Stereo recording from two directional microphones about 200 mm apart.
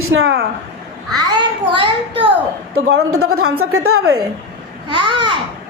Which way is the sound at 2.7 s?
90° right.